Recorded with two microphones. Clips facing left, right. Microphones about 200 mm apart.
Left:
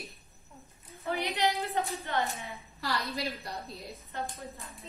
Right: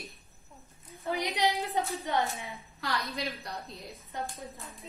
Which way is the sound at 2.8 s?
Centre (ahead or behind).